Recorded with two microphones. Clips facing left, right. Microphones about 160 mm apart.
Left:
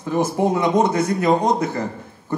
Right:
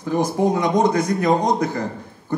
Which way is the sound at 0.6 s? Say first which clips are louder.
Even; 25° left (ahead or behind).